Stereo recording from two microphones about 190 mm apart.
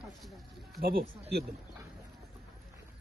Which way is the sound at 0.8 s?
55° right (ahead or behind).